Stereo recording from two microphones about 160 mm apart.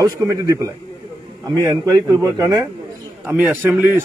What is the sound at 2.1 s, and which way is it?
Speech, 20° right (ahead or behind).